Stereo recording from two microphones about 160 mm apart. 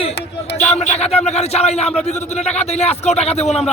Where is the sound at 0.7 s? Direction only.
40° left (ahead or behind).